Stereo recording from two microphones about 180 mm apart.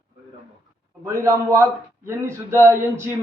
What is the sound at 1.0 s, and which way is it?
A man's voice, 15° right (ahead or behind).